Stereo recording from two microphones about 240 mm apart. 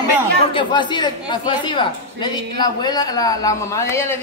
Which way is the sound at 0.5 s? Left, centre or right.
Centre.